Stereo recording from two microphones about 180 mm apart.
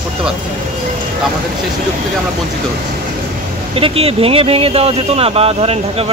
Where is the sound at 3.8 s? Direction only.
30° right (ahead or behind).